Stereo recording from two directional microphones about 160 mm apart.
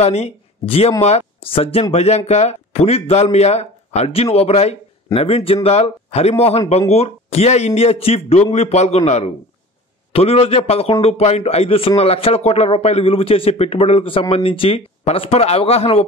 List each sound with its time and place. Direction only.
0.0 s a man's voice: 45° left (ahead or behind)